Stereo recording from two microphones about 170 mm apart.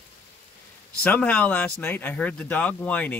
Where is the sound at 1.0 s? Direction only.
10° left (ahead or behind).